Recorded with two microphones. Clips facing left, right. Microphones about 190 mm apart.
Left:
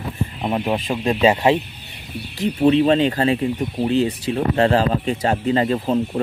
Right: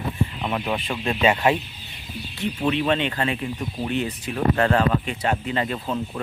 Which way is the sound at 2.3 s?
35° left (ahead or behind).